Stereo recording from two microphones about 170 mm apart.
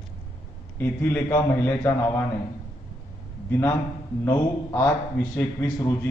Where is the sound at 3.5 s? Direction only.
15° left (ahead or behind).